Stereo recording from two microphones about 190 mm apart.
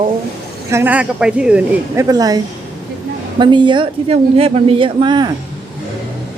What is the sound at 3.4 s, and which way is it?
Speech, 25° right (ahead or behind).